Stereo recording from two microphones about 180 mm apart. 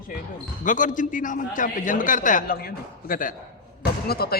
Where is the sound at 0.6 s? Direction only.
45° left (ahead or behind).